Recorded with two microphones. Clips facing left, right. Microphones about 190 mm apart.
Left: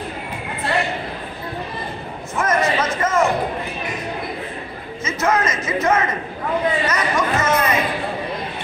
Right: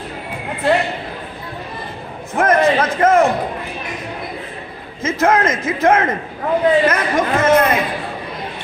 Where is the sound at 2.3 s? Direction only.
55° right (ahead or behind).